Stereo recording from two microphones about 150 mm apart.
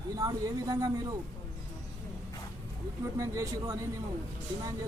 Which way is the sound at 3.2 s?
20° right (ahead or behind).